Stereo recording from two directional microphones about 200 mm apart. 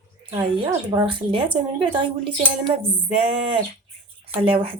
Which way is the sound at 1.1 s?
25° right (ahead or behind).